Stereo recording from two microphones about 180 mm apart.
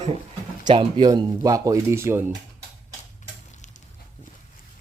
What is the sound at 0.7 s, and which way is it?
Speech, 25° right (ahead or behind).